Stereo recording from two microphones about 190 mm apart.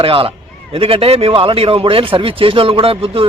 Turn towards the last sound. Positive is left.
turn(degrees=-30)  # may be behind; listen again after turning